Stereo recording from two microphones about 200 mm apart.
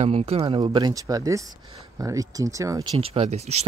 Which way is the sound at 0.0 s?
30° right (ahead or behind).